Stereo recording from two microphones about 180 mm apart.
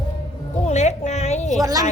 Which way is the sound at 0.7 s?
40° left (ahead or behind).